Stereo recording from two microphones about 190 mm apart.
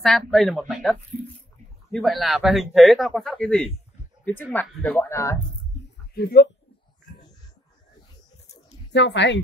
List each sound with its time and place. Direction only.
0.0 s speech: centre (ahead or behind)
6.1 s speech: 55° left (ahead or behind)
8.9 s speech: 70° left (ahead or behind)